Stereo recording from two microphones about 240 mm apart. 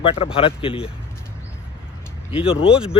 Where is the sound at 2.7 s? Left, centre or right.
Centre.